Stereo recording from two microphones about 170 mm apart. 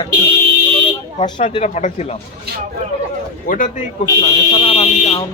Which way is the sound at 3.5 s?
50° left (ahead or behind).